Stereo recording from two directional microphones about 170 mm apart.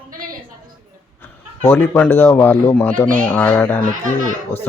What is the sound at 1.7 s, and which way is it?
Speech, 10° left (ahead or behind).